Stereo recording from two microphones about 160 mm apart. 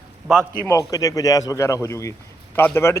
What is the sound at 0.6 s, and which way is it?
A man's voice, 20° left (ahead or behind).